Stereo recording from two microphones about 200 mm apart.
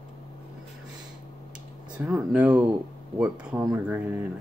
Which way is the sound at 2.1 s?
5° right (ahead or behind).